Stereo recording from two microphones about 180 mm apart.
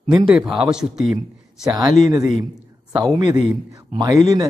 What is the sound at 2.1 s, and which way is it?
Speech, 20° right (ahead or behind).